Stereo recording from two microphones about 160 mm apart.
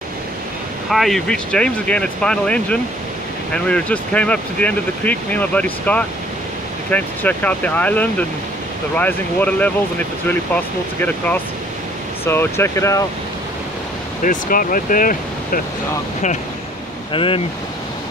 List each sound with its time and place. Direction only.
0.8 s speech: centre (ahead or behind); by 13.0 s 20° left (ahead or behind)
14.2 s speech: 60° left (ahead or behind)
17.1 s speech: 35° left (ahead or behind)